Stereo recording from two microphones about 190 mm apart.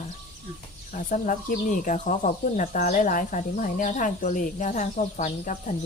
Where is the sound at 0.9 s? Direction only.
45° left (ahead or behind).